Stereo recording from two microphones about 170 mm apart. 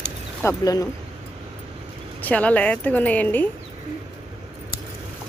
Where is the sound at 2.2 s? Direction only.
10° left (ahead or behind).